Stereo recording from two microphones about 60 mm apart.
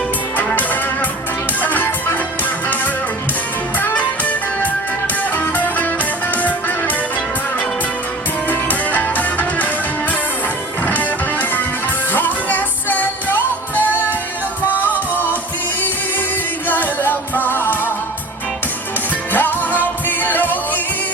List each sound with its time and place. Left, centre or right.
0.3 s music: left
3.8 s music: left
8.4 s music: left
10.8 s music: left
16.6 s music: left
19.3 s music: left